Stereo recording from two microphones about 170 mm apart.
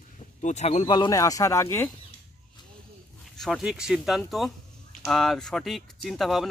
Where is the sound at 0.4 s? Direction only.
45° left (ahead or behind).